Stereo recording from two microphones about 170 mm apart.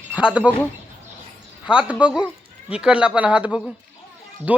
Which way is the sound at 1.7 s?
5° right (ahead or behind).